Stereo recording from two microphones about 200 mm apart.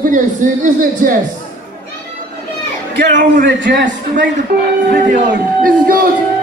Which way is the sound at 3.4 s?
60° right (ahead or behind).